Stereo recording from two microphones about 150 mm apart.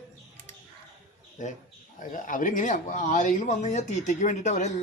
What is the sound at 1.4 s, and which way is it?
Speech, 55° left (ahead or behind).